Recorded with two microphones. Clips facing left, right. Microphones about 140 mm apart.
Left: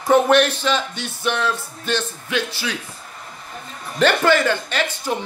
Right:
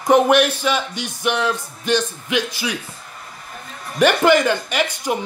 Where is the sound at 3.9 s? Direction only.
15° right (ahead or behind).